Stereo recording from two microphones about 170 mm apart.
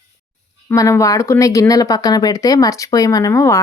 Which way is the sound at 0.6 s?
15° left (ahead or behind).